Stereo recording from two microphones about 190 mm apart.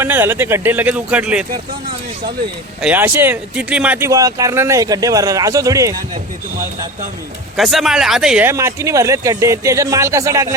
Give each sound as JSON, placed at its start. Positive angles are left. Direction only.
{"t": 0.0, "sound": "speech", "side_deg": -10}
{"t": 2.8, "sound": "speech", "side_deg": -10}
{"t": 7.5, "sound": "speech", "side_deg": 0}